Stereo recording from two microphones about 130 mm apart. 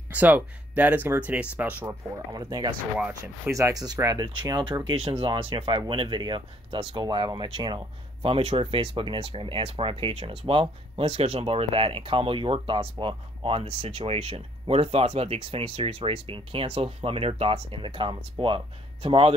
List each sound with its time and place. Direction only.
0.1 s speech: 10° right (ahead or behind)
1.9 s speech: 30° right (ahead or behind)
5.1 s speech: 45° right (ahead or behind)